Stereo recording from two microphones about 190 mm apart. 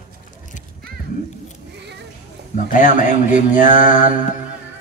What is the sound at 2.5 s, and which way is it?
A man's voice, 40° left (ahead or behind).